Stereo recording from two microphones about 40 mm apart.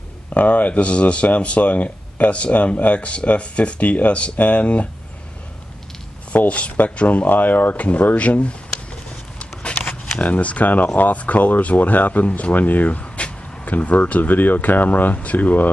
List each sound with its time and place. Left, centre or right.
0.3 s speech: left
6.3 s speech: left
9.4 s a sound: left
10.2 s speech: left
12.3 s speech: left
12.5 s speech: left
13.0 s speech: left